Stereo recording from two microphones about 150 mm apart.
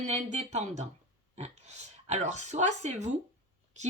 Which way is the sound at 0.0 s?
50° right (ahead or behind).